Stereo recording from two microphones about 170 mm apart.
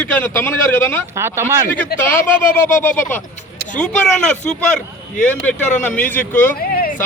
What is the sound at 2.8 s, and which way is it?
Speech, 10° left (ahead or behind).